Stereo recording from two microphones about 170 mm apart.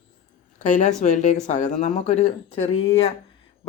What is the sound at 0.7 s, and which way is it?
Speech, 45° left (ahead or behind).